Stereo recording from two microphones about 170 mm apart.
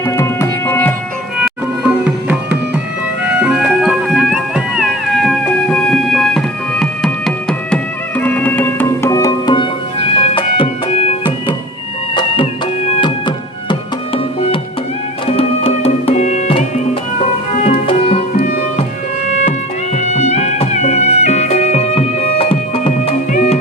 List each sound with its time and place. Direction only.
0.0 s tabla: 15° left (ahead or behind)
2.0 s music: 10° right (ahead or behind); by 9.6 s 20° left (ahead or behind)
10.0 s music: 35° left (ahead or behind)
17.8 s music: 35° left (ahead or behind)
23.3 s music: 45° left (ahead or behind)